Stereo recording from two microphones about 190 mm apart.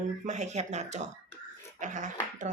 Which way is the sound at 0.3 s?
35° right (ahead or behind).